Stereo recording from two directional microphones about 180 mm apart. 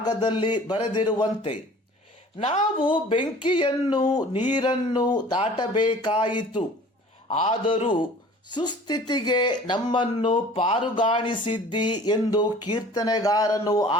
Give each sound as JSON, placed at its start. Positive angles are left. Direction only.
{"t": 0.0, "sound": "speech", "side_deg": 25}
{"t": 2.4, "sound": "speech", "side_deg": 35}
{"t": 7.6, "sound": "speech", "side_deg": 30}